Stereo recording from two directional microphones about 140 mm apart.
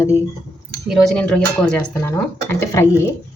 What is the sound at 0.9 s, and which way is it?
Speech, 5° left (ahead or behind).